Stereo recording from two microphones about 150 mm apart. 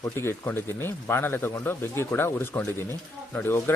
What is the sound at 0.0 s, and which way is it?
Speech, 15° left (ahead or behind).